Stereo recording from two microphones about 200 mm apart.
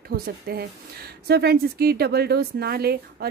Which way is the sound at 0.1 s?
50° right (ahead or behind).